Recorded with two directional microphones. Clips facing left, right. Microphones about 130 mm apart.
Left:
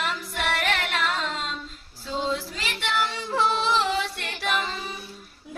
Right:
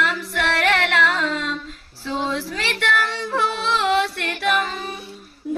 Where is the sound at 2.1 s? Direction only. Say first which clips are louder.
Right 3 dB; 80° right.